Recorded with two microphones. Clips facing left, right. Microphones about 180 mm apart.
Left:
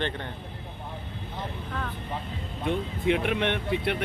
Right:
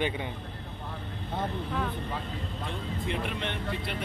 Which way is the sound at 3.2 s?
65° left (ahead or behind).